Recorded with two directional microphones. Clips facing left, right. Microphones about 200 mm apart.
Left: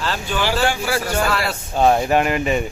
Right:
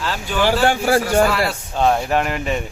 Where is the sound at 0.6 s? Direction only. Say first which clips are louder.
Right 4 dB; 50° right (ahead or behind).